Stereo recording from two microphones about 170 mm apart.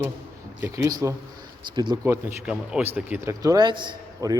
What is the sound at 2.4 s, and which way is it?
Speech, 5° right (ahead or behind).